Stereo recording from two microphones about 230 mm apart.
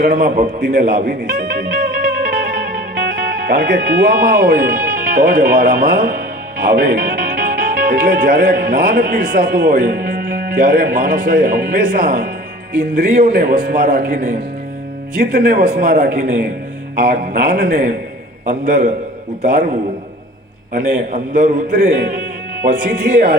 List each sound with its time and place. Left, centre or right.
0.1 s a man's voice: right
3.0 s a man's voice: right
20.7 s a man's voice: right